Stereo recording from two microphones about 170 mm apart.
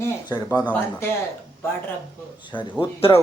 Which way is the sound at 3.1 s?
20° left (ahead or behind).